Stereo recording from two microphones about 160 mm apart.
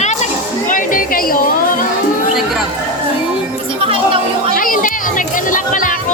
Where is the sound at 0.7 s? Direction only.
55° left (ahead or behind).